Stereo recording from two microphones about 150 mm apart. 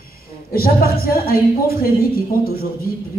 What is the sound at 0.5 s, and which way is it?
A woman's voice, 80° left.